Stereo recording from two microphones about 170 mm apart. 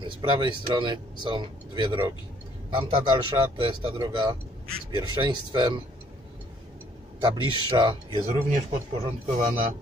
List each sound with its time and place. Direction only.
0.2 s a man's voice: 30° right (ahead or behind)
7.2 s speech: 25° right (ahead or behind)
8.5 s speech: 45° right (ahead or behind)